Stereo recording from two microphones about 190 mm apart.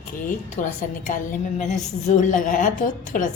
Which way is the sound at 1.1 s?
40° left (ahead or behind).